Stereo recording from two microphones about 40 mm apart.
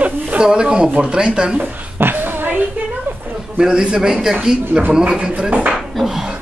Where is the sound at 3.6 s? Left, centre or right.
Centre.